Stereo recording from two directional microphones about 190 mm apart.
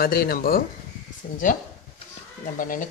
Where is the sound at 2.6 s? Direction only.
45° left (ahead or behind).